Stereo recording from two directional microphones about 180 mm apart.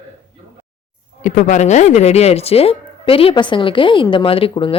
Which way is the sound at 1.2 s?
40° left (ahead or behind).